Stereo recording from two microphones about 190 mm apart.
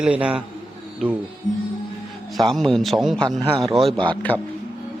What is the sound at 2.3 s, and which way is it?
A man's voice, centre (ahead or behind).